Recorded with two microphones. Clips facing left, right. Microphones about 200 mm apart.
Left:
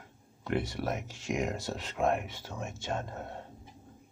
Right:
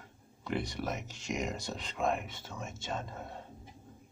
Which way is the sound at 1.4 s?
5° left (ahead or behind).